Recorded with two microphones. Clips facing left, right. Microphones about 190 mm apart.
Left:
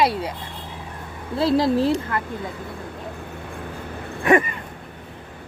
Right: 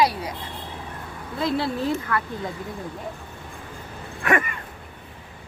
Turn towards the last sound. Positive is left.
turn(degrees=20)  # may be behind; listen again after turning